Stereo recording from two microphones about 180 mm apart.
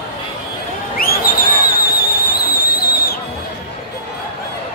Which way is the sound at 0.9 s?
55° left (ahead or behind).